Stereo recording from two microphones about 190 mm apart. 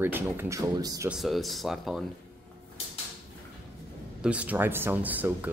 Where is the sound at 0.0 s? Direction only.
10° right (ahead or behind).